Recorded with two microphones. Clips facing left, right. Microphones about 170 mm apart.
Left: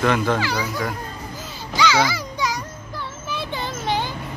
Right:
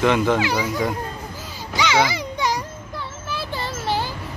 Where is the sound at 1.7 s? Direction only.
20° right (ahead or behind).